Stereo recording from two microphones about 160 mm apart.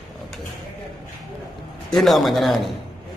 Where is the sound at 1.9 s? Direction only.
Centre (ahead or behind).